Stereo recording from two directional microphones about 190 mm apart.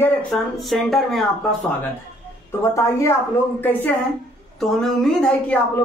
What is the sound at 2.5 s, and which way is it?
A woman's voice, 15° left (ahead or behind).